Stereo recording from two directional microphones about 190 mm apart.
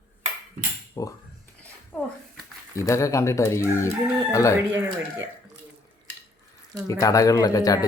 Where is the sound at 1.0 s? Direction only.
20° left (ahead or behind).